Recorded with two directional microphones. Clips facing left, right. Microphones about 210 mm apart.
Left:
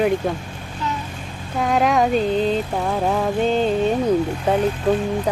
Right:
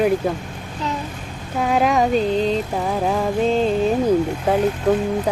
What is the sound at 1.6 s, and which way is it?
Music, centre (ahead or behind).